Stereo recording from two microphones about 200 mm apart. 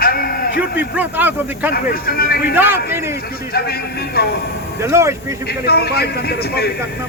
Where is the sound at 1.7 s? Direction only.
50° left (ahead or behind).